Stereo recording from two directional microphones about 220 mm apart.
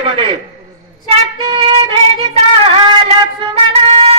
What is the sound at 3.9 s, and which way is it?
Music, 25° right (ahead or behind).